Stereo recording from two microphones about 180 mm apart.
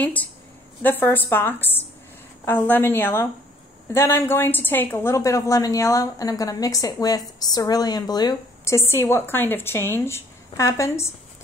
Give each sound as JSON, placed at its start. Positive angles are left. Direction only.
{"t": 0.0, "sound": "a woman's voice", "side_deg": 10}